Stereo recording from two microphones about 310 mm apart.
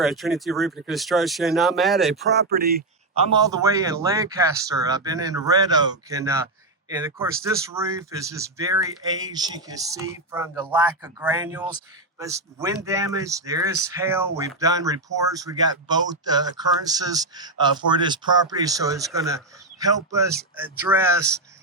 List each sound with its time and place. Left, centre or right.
0.0 s speech: centre
2.3 s speech: right
3.2 s speech: centre